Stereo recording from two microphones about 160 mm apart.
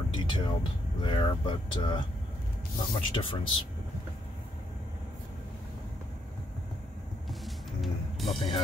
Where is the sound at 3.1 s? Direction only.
30° left (ahead or behind).